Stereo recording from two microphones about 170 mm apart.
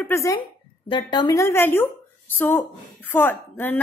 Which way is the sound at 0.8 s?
25° left (ahead or behind).